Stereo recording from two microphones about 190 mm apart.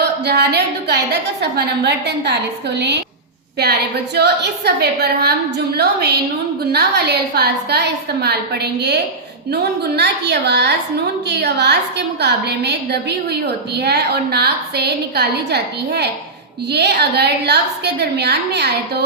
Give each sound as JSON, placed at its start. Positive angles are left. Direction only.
{"t": 0.3, "sound": "a woman's voice", "side_deg": -60}